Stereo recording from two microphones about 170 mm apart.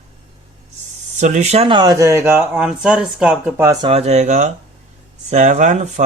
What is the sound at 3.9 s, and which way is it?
Speech, 35° right (ahead or behind).